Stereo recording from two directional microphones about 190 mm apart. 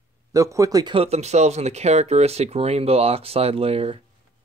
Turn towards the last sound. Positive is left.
turn(degrees=-30)  # may be behind; listen again after turning